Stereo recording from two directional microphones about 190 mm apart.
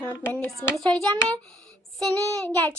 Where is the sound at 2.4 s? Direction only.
10° left (ahead or behind).